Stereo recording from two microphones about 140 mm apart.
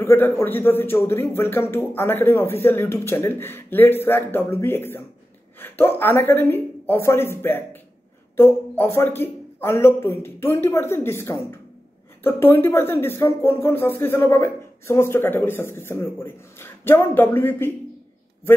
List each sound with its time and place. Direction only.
0.0 s speech: 15° left (ahead or behind)